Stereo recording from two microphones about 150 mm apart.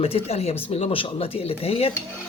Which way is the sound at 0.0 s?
40° left (ahead or behind).